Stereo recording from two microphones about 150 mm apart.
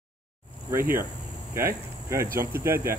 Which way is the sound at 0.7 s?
15° right (ahead or behind).